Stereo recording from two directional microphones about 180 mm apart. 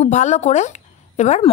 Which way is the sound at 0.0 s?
40° left (ahead or behind).